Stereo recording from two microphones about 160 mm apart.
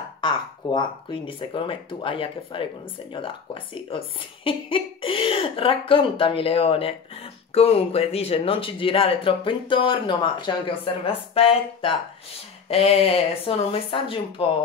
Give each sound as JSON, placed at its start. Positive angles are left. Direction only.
{"t": 0.2, "sound": "speech", "side_deg": 30}